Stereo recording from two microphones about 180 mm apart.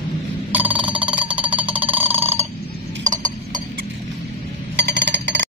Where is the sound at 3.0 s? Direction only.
45° right (ahead or behind).